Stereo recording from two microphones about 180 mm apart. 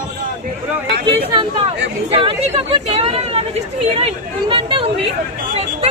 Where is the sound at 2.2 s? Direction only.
30° right (ahead or behind).